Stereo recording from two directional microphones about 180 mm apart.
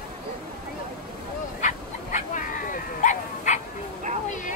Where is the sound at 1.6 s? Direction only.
45° left (ahead or behind).